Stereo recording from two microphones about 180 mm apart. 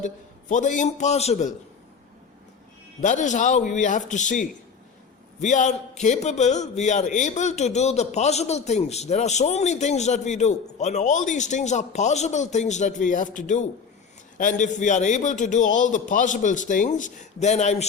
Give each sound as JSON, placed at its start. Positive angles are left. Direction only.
{"t": 0.0, "sound": "a man's voice", "side_deg": 45}
{"t": 3.0, "sound": "a man's voice", "side_deg": 40}